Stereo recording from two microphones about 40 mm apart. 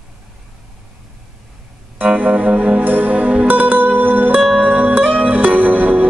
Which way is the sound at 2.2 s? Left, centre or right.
Right.